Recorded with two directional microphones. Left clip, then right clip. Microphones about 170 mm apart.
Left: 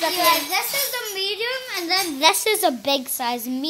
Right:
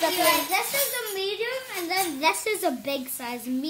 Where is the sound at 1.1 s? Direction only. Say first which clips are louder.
Left 4 dB; 65° left (ahead or behind).